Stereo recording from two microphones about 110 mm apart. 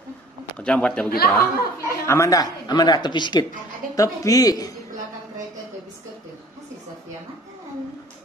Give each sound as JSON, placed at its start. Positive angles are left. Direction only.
{"t": 0.6, "sound": "speech", "side_deg": 10}
{"t": 1.8, "sound": "a woman's voice", "side_deg": 25}
{"t": 3.9, "sound": "a man's voice", "side_deg": 30}